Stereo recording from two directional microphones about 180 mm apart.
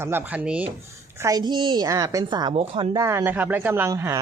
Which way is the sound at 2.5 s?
35° right (ahead or behind).